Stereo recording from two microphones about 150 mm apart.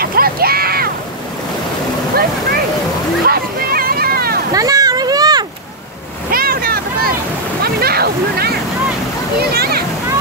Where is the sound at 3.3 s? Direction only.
85° right.